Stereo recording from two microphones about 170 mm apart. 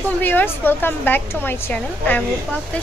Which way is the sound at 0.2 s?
10° left (ahead or behind).